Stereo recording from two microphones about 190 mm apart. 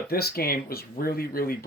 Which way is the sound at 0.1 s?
55° left (ahead or behind).